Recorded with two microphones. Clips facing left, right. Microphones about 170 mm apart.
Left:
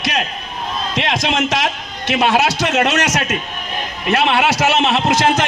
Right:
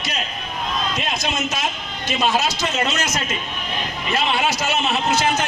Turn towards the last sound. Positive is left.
turn(degrees=80)